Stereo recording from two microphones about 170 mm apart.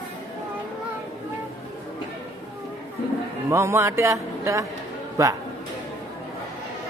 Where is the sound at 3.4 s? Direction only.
15° right (ahead or behind).